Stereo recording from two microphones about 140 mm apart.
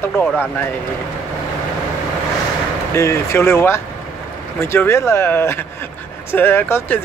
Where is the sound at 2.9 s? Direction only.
20° left (ahead or behind).